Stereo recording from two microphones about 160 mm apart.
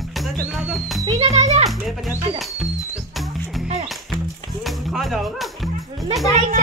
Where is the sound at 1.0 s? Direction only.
40° right (ahead or behind).